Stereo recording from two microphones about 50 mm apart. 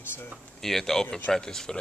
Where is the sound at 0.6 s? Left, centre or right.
Centre.